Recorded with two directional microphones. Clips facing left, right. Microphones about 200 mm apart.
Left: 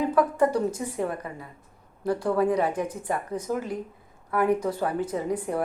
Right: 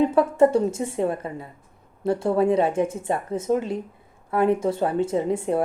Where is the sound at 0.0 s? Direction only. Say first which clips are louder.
Right 5 dB; 25° right (ahead or behind).